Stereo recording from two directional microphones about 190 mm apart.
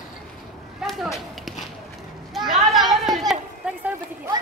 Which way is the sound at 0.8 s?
Centre (ahead or behind).